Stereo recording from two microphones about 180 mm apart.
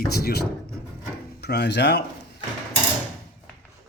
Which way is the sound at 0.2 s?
60° left (ahead or behind).